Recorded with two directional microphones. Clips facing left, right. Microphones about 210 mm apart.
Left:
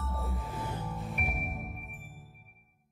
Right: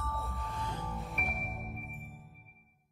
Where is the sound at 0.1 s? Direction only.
Centre (ahead or behind).